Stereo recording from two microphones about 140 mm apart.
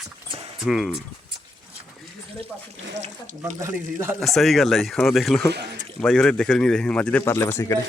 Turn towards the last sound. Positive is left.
turn(degrees=15)  # may be behind; listen again after turning